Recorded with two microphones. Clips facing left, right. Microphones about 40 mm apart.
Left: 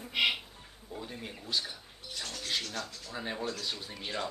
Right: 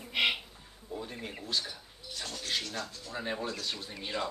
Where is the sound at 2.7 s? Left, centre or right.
Right.